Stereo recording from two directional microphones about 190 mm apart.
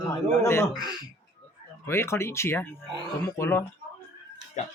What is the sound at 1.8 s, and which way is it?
Speech, 15° left (ahead or behind).